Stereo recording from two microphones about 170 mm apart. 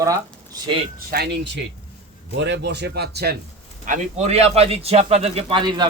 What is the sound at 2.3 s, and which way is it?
A man's voice, 90° right.